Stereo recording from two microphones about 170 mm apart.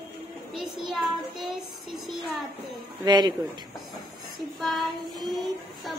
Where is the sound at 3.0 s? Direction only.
25° right (ahead or behind).